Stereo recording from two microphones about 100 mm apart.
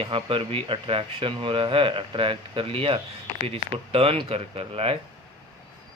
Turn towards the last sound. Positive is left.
turn(degrees=-75)  # may be behind; listen again after turning